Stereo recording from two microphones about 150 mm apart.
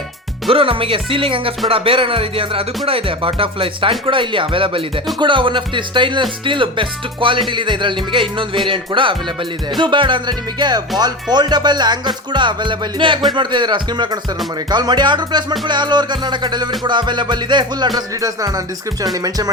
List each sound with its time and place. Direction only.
0.5 s speech: 35° right (ahead or behind)
14.7 s music: 30° right (ahead or behind)